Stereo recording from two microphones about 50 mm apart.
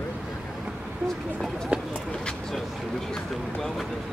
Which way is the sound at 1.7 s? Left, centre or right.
Right.